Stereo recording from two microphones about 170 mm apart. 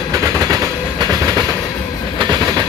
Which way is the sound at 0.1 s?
20° right (ahead or behind).